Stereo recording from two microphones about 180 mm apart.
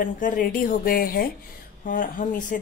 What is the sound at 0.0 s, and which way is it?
Speech, 50° left (ahead or behind).